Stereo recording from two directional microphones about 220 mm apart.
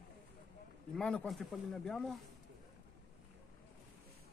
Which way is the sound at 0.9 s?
5° left (ahead or behind).